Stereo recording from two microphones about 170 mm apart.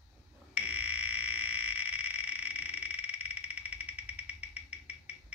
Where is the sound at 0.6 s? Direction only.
10° right (ahead or behind).